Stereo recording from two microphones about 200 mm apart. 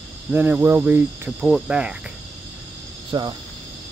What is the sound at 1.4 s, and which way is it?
Speech, centre (ahead or behind).